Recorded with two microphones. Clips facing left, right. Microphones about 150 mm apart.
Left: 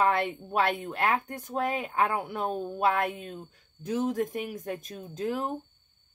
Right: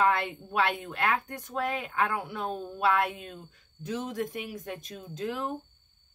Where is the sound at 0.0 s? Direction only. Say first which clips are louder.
Left 1 dB; 40° left (ahead or behind).